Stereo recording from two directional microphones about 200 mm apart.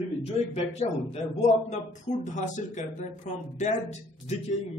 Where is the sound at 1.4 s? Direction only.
35° left (ahead or behind).